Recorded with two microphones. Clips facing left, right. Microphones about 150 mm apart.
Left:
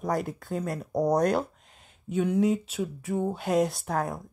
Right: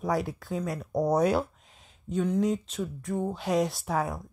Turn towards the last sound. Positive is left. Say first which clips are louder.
# even
turn(degrees=0)  # may be behind; listen again after turning